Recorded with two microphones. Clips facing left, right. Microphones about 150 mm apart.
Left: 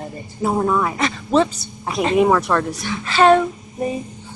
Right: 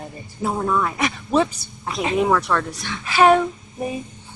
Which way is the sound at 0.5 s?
20° left (ahead or behind).